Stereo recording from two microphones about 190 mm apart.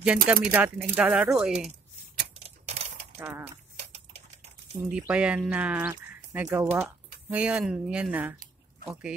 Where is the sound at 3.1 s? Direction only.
10° right (ahead or behind).